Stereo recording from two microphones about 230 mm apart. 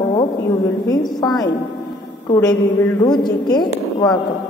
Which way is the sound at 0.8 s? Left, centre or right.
Centre.